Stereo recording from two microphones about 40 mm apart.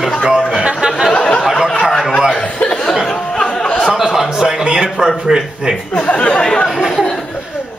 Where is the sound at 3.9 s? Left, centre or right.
Centre.